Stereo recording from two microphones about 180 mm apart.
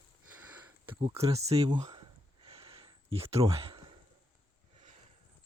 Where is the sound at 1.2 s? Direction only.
35° right (ahead or behind).